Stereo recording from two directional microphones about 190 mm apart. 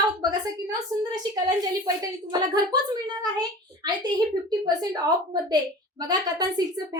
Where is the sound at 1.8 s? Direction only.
20° right (ahead or behind).